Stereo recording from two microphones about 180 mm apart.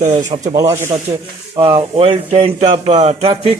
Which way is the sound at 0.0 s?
40° right (ahead or behind).